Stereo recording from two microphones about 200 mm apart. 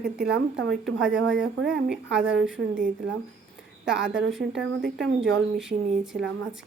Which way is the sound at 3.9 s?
60° right (ahead or behind).